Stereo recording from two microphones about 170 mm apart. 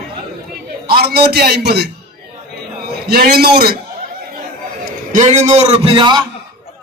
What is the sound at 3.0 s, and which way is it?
Speech, 65° right (ahead or behind).